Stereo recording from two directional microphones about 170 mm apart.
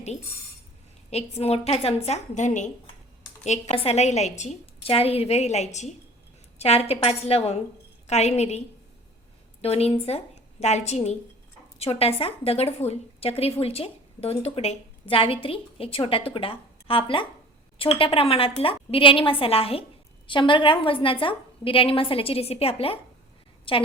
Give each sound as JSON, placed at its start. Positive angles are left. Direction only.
{"t": 1.1, "sound": "a woman's voice", "side_deg": 35}